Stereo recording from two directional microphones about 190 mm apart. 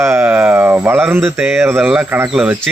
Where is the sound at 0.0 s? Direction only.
10° right (ahead or behind).